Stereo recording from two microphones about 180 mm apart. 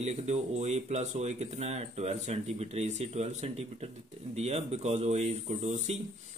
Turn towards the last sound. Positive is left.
turn(degrees=-40)  # may be behind; listen again after turning